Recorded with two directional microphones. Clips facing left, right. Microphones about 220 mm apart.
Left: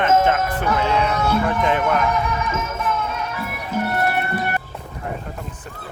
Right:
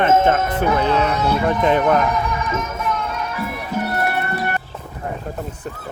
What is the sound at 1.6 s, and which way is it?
Speech, 35° right (ahead or behind).